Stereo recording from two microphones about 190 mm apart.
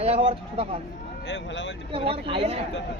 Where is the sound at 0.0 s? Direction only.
30° right (ahead or behind).